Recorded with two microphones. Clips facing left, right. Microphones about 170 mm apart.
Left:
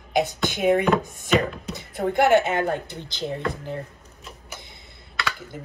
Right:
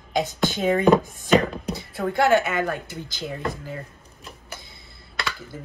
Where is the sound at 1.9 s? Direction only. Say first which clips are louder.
Left 1 dB; 20° left (ahead or behind).